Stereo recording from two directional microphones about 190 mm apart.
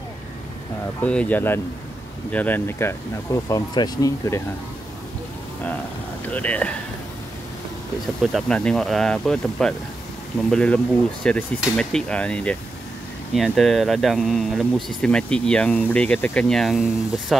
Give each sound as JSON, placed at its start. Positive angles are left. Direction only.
{"t": 1.0, "sound": "speech", "side_deg": 5}
{"t": 6.3, "sound": "speech", "side_deg": 10}
{"t": 8.2, "sound": "speech", "side_deg": 0}